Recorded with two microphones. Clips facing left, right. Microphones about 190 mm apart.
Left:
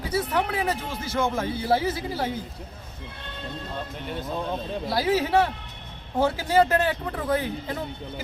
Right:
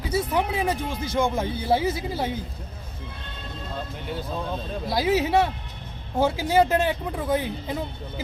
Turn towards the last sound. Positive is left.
turn(degrees=-10)  # may be behind; listen again after turning